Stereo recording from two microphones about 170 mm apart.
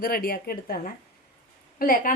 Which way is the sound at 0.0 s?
60° left (ahead or behind).